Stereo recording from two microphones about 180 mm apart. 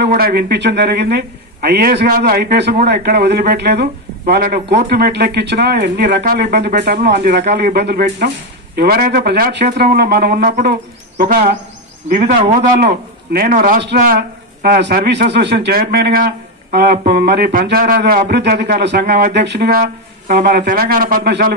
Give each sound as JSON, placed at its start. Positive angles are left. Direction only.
{"t": 0.0, "sound": "speech", "side_deg": -60}
{"t": 19.8, "sound": "speech", "side_deg": -45}